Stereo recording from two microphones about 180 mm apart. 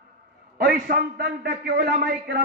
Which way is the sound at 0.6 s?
55° right (ahead or behind).